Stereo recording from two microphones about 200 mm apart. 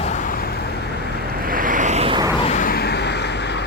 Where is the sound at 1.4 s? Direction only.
45° right (ahead or behind).